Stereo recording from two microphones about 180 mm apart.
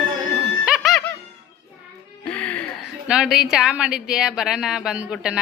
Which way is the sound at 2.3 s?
5° left (ahead or behind).